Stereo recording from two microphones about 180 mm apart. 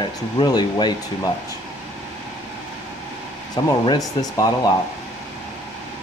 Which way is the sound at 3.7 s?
20° left (ahead or behind).